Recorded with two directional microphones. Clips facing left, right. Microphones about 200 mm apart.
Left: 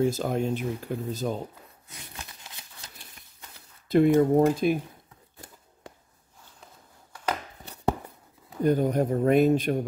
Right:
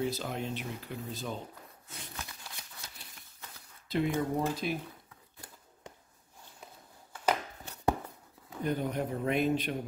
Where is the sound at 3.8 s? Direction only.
50° left (ahead or behind).